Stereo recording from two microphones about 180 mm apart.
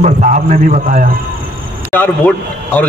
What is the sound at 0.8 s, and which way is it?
Speech, 55° right (ahead or behind).